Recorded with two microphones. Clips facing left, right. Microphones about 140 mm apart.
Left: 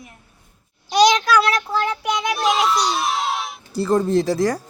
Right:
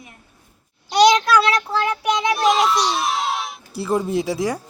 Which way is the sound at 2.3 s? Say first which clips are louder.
Right 1 dB; centre (ahead or behind).